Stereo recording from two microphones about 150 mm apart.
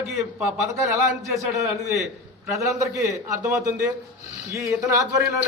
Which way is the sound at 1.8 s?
Centre (ahead or behind).